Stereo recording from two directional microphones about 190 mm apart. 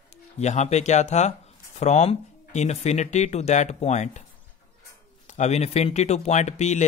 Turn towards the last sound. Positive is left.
turn(degrees=35)  # may be behind; listen again after turning